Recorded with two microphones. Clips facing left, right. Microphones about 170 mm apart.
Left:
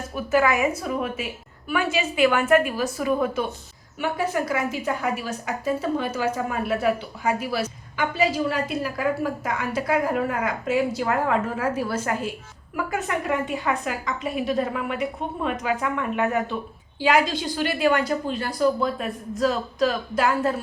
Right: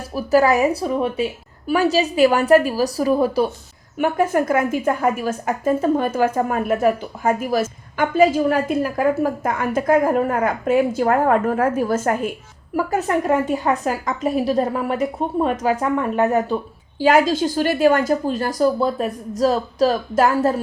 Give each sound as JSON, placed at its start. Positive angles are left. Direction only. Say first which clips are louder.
{"t": 0.1, "sound": "a woman's voice", "louder": "right 6 dB", "side_deg": -35}
{"t": 3.9, "sound": "a woman's voice", "louder": "right 7 dB", "side_deg": -50}
{"t": 12.7, "sound": "a woman's voice", "louder": "right 7 dB", "side_deg": -40}